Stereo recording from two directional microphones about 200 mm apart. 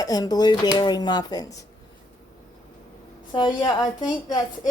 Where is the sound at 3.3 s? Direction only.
20° left (ahead or behind).